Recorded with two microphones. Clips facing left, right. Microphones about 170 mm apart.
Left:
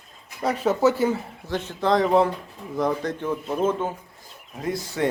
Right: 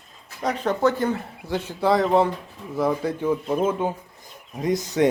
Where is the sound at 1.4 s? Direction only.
10° right (ahead or behind).